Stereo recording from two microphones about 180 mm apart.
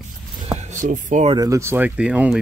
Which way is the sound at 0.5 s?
40° right (ahead or behind).